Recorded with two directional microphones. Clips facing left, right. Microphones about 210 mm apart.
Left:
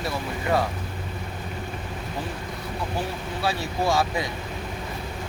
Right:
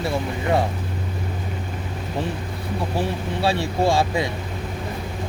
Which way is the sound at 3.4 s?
25° right (ahead or behind).